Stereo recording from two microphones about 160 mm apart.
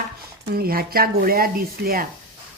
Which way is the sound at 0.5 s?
70° right (ahead or behind).